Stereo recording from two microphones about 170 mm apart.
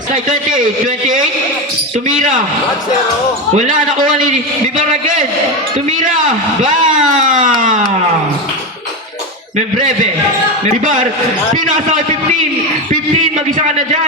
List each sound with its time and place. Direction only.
0.1 s a man's voice: 50° right (ahead or behind)
3.5 s a man's voice: 45° right (ahead or behind)
9.6 s a man's voice: 50° right (ahead or behind)